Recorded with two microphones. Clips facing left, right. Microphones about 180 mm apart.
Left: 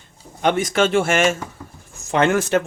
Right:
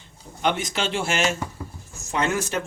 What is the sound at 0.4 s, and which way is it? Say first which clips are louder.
Speech: left 7 dB; 50° left (ahead or behind).